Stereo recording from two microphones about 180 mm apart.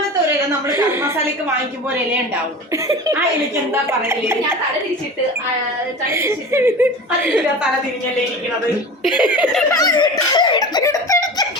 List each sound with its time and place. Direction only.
0.7 s a woman's voice: 15° right (ahead or behind)
2.7 s a woman's voice: 15° right (ahead or behind)
6.1 s a woman's voice: 15° right (ahead or behind)
9.0 s speech: 5° right (ahead or behind)
9.6 s giggle: 20° left (ahead or behind)